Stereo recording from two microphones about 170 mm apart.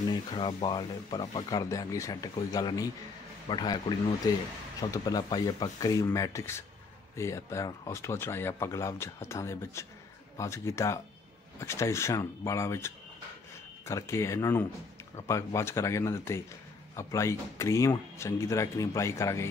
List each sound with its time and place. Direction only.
0.1 s speech: 30° left (ahead or behind)